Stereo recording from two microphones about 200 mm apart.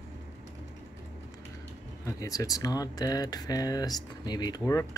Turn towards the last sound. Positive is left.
turn(degrees=20)  # may be behind; listen again after turning